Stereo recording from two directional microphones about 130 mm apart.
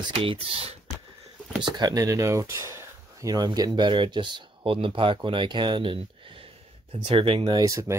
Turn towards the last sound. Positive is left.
turn(degrees=-25)  # may be behind; listen again after turning